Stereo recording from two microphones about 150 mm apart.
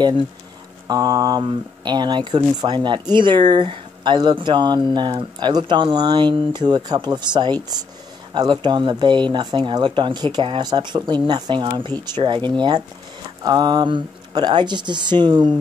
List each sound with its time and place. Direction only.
0.8 s speech: 25° right (ahead or behind)